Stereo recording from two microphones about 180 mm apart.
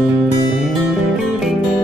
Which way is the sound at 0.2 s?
Centre (ahead or behind).